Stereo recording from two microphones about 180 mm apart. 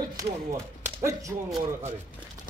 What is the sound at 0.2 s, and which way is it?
Speech, 15° right (ahead or behind).